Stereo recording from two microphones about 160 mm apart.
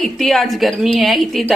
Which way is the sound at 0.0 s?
Centre (ahead or behind).